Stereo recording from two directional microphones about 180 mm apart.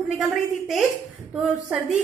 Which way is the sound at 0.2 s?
Centre (ahead or behind).